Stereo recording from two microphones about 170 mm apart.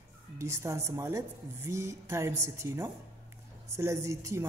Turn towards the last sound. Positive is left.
turn(degrees=-15)  # may be behind; listen again after turning